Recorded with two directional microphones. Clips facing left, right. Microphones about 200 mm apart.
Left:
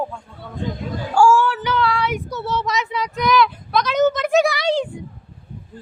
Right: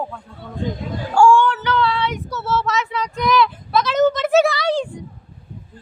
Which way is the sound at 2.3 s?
15° left (ahead or behind).